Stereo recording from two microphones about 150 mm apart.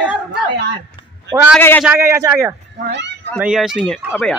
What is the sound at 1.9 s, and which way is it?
Speech, 20° right (ahead or behind).